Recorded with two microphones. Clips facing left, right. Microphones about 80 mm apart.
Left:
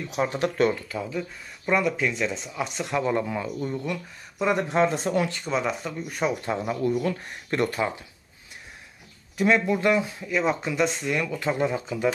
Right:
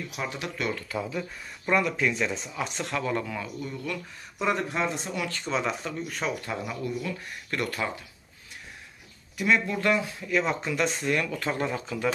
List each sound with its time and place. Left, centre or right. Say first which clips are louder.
0.1 s speech: left 8 dB; left
0.8 s speech: left 1 dB; centre
2.8 s speech: left 5 dB; centre
4.4 s speech: left 3 dB; centre
4.9 s speech: left 9 dB; left
5.3 s speech: left 2 dB; centre
6.0 s speech: left 7 dB; centre
6.8 s speech: left 7 dB; left
7.2 s speech: left 5 dB; left
9.7 s speech: left 4 dB; centre